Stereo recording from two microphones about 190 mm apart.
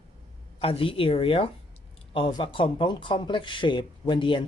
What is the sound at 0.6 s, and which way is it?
Speech, 30° left (ahead or behind).